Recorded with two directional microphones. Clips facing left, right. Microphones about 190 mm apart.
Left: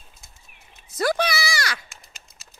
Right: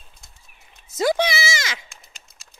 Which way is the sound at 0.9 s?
20° right (ahead or behind).